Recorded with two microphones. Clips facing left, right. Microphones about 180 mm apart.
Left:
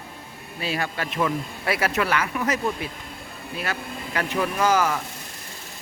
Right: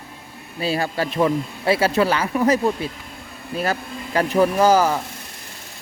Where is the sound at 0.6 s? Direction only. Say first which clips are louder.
Right 6 dB; 35° right (ahead or behind).